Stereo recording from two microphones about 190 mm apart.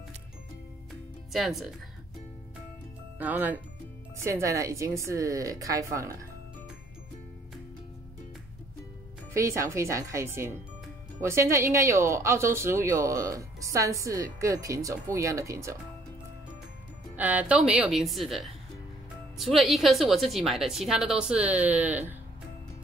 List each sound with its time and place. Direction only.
1.3 s a woman's voice: centre (ahead or behind)
3.2 s speech: 10° right (ahead or behind)
9.3 s speech: 15° right (ahead or behind)
17.1 s a woman's voice: 10° right (ahead or behind)